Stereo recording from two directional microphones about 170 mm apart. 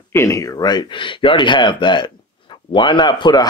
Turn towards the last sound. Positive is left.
turn(degrees=25)  # may be behind; listen again after turning